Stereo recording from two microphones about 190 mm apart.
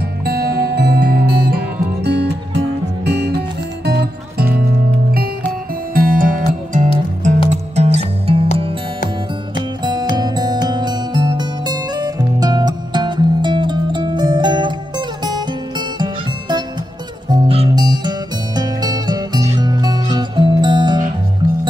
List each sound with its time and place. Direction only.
0.2 s music: 55° right (ahead or behind)
5.9 s music: 45° right (ahead or behind)
9.8 s music: 20° right (ahead or behind)